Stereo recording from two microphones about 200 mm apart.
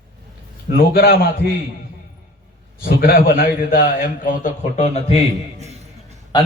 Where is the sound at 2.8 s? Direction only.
45° left (ahead or behind); by 5.2 s 30° left (ahead or behind).